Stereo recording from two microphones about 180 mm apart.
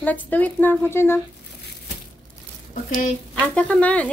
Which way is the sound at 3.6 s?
5° left (ahead or behind).